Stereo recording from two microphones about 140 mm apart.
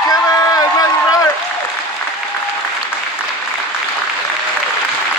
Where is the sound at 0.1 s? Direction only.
30° left (ahead or behind).